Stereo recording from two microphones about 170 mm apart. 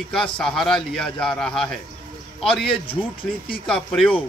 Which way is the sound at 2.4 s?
30° left (ahead or behind).